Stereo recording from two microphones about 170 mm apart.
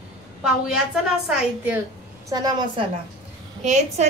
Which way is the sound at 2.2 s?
25° right (ahead or behind).